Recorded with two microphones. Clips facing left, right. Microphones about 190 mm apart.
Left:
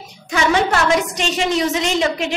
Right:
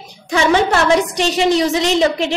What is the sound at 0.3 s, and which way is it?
A woman's voice, 35° right (ahead or behind).